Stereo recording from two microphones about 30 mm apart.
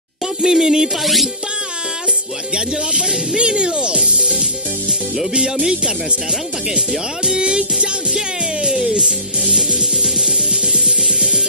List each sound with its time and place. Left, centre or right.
0.4 s music: centre
1.0 s music: centre
2.5 s speech: right
7.3 s speech: right
8.6 s music: right